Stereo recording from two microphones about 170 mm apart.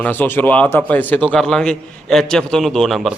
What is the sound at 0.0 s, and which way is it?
A man's voice, 10° left (ahead or behind).